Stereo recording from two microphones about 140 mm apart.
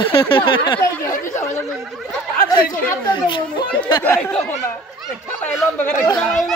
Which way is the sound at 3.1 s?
35° left (ahead or behind).